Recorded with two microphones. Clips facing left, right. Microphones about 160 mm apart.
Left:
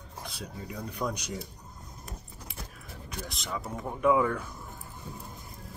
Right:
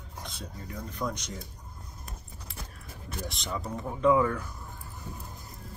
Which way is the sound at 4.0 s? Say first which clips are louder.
Right 1 dB; 15° left (ahead or behind).